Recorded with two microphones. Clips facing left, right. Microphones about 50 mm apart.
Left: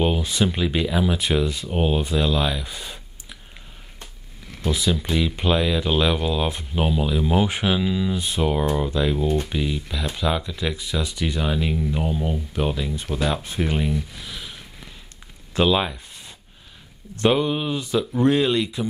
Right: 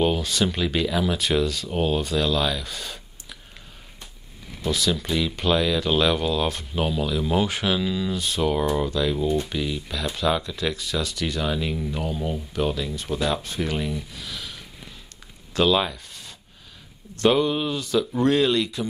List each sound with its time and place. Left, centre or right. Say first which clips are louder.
0.0 s speech: left 1 dB; centre
4.6 s speech: left 1 dB; centre
14.2 s sniff: even; centre
15.5 s a sound: left 1 dB; centre
17.2 s speech: even; centre